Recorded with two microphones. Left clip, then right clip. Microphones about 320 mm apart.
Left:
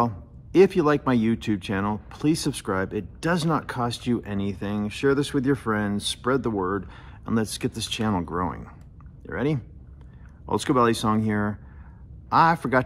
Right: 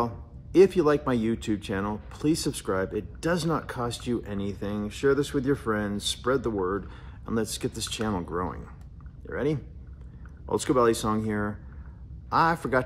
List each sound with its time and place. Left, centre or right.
0.0 s speech: left